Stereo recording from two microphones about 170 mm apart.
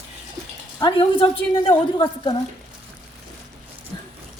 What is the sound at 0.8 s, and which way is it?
A woman's voice, 30° left (ahead or behind).